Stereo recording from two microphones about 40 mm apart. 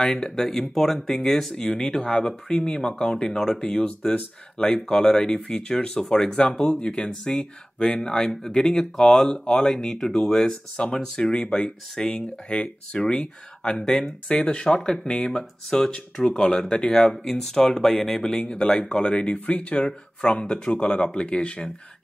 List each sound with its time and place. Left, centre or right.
0.0 s speech: centre
8.0 s speech: centre
12.4 s speech: left
17.2 s speech: centre; by 19.3 s left
19.3 s speech: left